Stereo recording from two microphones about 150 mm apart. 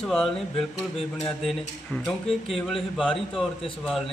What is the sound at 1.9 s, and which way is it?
A man's voice, 5° left (ahead or behind).